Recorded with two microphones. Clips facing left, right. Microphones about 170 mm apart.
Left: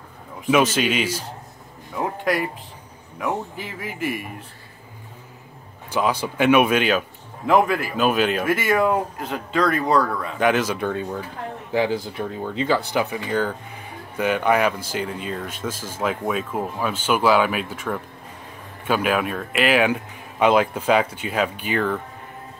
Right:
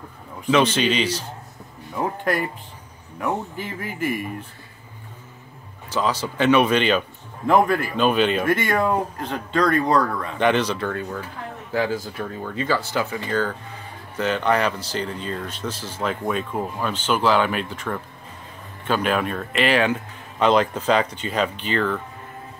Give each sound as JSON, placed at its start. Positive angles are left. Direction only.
{"t": 0.5, "sound": "speech", "side_deg": 5}
{"t": 5.9, "sound": "speech", "side_deg": 10}